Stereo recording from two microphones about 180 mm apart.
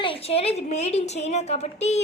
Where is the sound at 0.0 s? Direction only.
30° left (ahead or behind).